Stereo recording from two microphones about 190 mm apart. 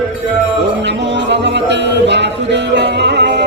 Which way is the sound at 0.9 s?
65° right (ahead or behind).